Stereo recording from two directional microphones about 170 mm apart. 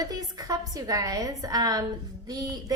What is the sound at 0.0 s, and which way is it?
A woman's voice, 20° right (ahead or behind).